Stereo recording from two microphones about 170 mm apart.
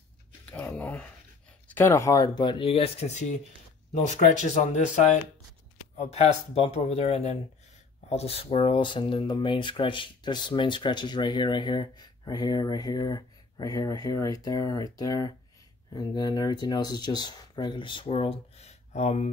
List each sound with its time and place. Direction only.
0.5 s a sound: 10° left (ahead or behind)
1.7 s speech: 10° left (ahead or behind); by 4.8 s 45° left (ahead or behind)
5.9 s speech: 35° left (ahead or behind)